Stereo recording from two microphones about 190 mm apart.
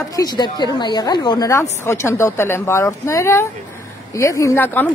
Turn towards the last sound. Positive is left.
turn(degrees=10)  # may be behind; listen again after turning